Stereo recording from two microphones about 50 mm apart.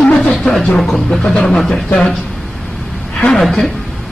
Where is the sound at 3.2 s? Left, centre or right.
Centre.